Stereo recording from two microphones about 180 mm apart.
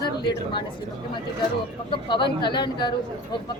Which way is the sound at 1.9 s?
25° left (ahead or behind).